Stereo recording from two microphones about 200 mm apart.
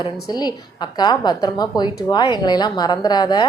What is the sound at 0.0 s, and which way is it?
A woman's voice, 20° left (ahead or behind).